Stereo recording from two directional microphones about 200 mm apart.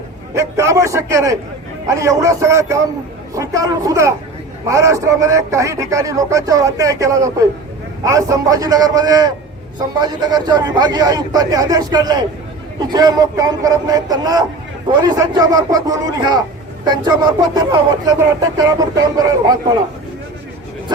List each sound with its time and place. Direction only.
0.3 s speech: 15° right (ahead or behind)